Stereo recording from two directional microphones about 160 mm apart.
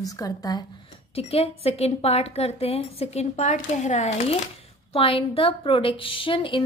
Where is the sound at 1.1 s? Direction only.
40° left (ahead or behind).